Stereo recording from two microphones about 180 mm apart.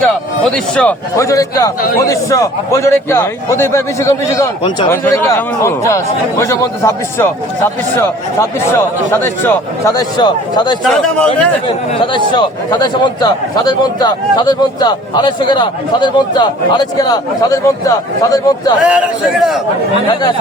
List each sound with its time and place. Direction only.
0.5 s a man's voice: 5° left (ahead or behind); by 10.8 s 25° left (ahead or behind)
10.8 s speech: 5° left (ahead or behind)
11.6 s speech: 25° left (ahead or behind)
18.9 s speech: 5° right (ahead or behind)